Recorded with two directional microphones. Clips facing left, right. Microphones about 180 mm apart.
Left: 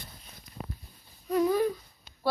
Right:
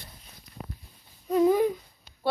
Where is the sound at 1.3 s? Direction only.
20° right (ahead or behind).